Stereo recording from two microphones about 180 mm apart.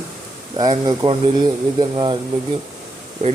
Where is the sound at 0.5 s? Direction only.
25° right (ahead or behind).